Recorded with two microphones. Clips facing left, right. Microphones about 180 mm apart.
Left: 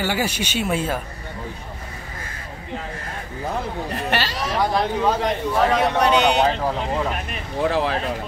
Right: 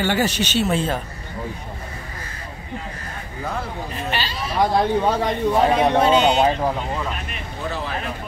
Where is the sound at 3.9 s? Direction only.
75° left (ahead or behind).